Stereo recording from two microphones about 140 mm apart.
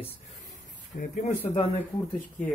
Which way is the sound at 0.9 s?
65° left (ahead or behind).